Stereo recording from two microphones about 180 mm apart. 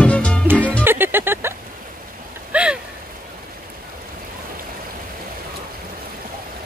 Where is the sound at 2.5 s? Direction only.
5° right (ahead or behind).